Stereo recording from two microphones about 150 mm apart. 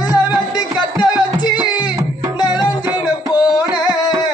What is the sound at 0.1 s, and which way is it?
Music, 30° left (ahead or behind).